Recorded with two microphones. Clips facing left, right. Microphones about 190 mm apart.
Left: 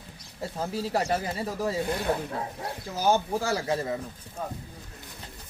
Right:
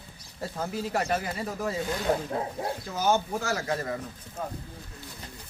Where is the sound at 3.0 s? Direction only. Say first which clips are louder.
Left 2 dB; 30° left (ahead or behind).